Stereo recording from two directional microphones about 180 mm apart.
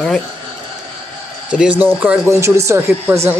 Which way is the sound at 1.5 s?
5° right (ahead or behind).